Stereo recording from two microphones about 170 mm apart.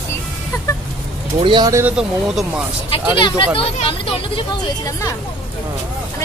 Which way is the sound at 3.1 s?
30° left (ahead or behind).